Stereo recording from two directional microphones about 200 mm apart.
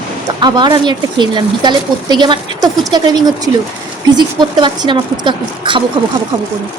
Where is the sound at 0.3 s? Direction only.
20° right (ahead or behind).